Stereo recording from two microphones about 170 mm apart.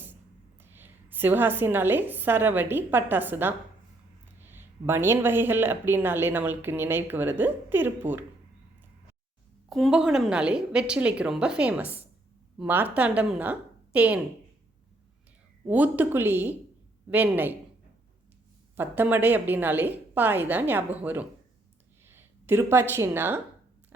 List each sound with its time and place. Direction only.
0.6 s a woman's voice: 10° right (ahead or behind)
9.6 s a woman's voice: centre (ahead or behind)
15.6 s speech: 10° right (ahead or behind)
18.8 s speech: 10° right (ahead or behind)